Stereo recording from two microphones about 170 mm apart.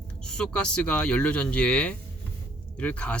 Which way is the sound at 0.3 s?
5° left (ahead or behind).